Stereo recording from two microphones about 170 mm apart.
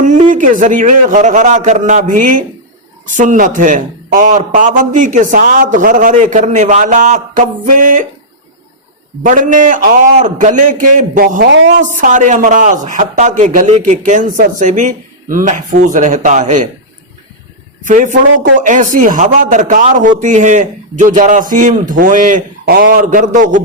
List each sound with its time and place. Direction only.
0.0 s a man's voice: 45° right (ahead or behind)
9.2 s a man's voice: 50° right (ahead or behind)
17.8 s a man's voice: 50° right (ahead or behind)